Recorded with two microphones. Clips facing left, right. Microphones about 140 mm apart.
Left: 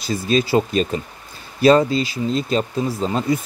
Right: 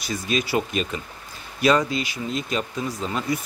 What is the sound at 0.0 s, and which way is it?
Speech, 30° left (ahead or behind).